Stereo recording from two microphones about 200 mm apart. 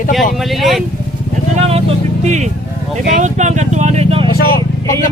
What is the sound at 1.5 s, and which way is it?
Speech, 30° right (ahead or behind).